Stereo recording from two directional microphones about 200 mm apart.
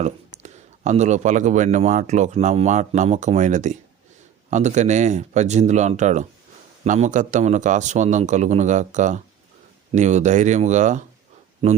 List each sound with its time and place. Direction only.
0.0 s speech: 35° right (ahead or behind)